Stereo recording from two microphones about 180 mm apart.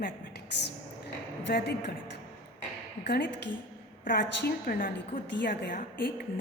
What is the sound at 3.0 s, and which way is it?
Speech, 65° left (ahead or behind).